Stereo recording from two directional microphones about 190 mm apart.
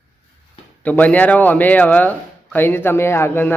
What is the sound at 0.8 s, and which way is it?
Speech, 10° left (ahead or behind).